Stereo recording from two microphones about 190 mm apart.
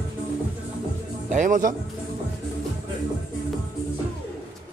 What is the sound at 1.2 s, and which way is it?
Speech, 40° right (ahead or behind).